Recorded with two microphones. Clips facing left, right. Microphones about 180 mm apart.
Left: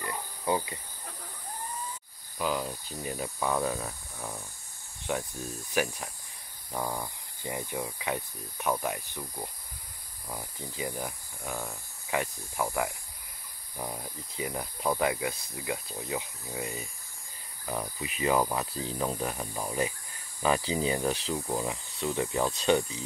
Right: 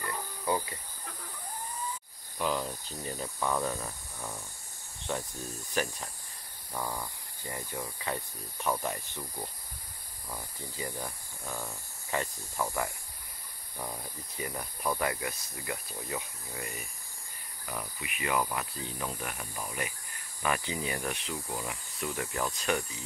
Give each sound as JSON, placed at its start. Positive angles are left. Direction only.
{"t": 0.0, "sound": "cricket", "side_deg": 20}
{"t": 2.3, "sound": "speech", "side_deg": 5}